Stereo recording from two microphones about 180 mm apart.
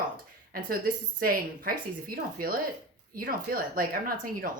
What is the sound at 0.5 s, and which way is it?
Speech, 55° right (ahead or behind).